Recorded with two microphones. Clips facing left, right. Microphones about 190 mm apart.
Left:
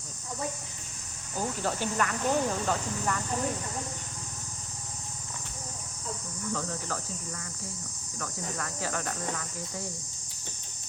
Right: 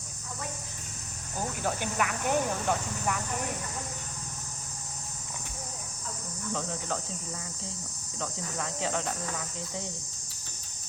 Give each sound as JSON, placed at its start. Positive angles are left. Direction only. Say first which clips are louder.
{"t": 1.5, "sound": "speech", "louder": "even", "side_deg": -10}
{"t": 6.5, "sound": "speech", "louder": "right 1 dB", "side_deg": -15}
{"t": 8.2, "sound": "cricket", "louder": "right 1 dB", "side_deg": -20}